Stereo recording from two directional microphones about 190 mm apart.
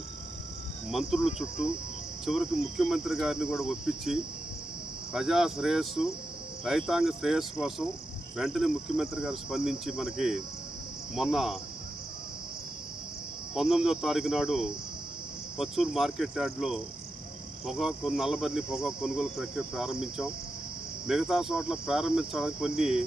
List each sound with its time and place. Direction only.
0.9 s cricket: centre (ahead or behind)
13.5 s cricket: centre (ahead or behind)